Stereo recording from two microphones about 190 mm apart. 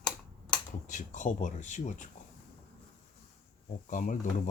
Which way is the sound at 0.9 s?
40° left (ahead or behind).